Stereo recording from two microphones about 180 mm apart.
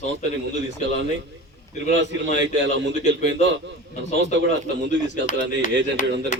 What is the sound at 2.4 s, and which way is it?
A man's voice, 90° right.